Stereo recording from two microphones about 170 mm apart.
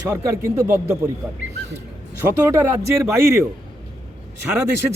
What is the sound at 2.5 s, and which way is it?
Speech, 15° right (ahead or behind).